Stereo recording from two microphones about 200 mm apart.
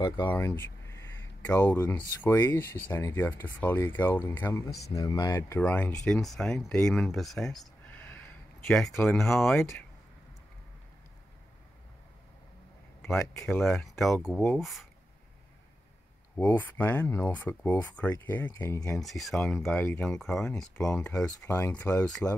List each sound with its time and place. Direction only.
0.3 s speech: 10° left (ahead or behind)
4.6 s speech: 55° left (ahead or behind)
4.9 s speech: 20° left (ahead or behind); by 9.7 s 5° left (ahead or behind)
13.0 s speech: 5° left (ahead or behind)
16.4 s speech: 10° left (ahead or behind)
18.9 s speech: centre (ahead or behind)